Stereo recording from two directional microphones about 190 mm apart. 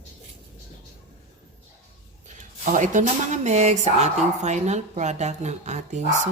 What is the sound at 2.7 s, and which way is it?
Speech, 40° right (ahead or behind).